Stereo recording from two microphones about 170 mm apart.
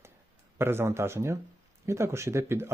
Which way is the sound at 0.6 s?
15° right (ahead or behind).